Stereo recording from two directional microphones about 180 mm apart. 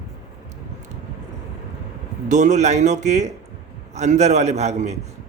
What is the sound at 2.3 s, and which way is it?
A man's voice, 40° right (ahead or behind).